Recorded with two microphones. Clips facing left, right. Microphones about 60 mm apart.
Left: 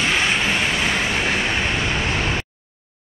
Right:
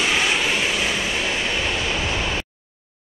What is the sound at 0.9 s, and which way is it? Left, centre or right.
Vehicle, left.